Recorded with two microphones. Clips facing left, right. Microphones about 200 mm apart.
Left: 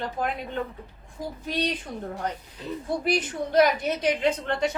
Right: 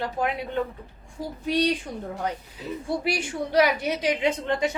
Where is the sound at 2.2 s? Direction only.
10° right (ahead or behind).